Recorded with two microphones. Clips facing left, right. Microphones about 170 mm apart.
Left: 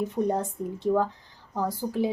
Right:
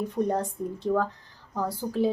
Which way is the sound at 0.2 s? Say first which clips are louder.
Even; 30° left (ahead or behind).